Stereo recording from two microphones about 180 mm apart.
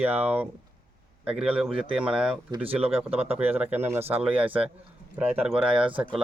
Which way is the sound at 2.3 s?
30° right (ahead or behind).